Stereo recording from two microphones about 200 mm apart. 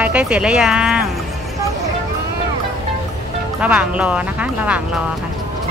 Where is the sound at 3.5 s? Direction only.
5° right (ahead or behind).